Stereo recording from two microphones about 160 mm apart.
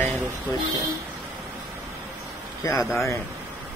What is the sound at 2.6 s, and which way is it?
Speech, 20° left (ahead or behind).